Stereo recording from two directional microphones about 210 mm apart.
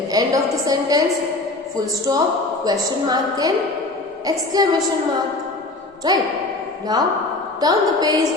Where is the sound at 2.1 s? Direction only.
20° right (ahead or behind).